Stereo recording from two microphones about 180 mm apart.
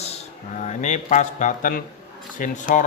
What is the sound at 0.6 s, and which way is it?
A man's voice, 40° left (ahead or behind).